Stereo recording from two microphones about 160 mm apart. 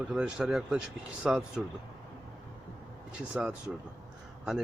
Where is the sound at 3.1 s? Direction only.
5° right (ahead or behind).